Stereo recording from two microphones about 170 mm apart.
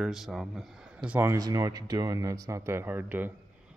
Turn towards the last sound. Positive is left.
turn(degrees=-10)  # may be behind; listen again after turning